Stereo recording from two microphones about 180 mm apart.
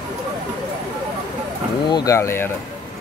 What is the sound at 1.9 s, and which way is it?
Speech, 20° left (ahead or behind).